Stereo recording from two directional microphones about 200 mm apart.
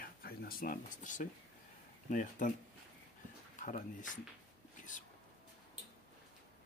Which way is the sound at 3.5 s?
40° left (ahead or behind).